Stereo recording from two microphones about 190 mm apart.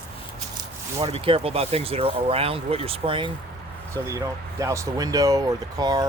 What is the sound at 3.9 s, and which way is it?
Speech, 15° right (ahead or behind).